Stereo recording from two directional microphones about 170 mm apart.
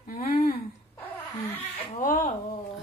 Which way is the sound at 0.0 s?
55° left (ahead or behind).